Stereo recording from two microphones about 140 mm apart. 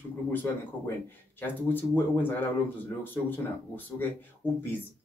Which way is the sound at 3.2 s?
15° left (ahead or behind).